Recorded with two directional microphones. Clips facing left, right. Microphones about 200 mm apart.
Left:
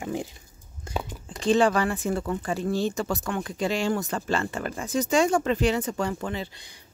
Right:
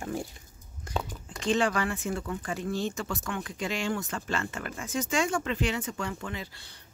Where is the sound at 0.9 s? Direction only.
25° left (ahead or behind).